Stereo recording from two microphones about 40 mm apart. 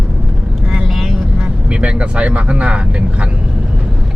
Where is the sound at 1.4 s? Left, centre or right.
Right.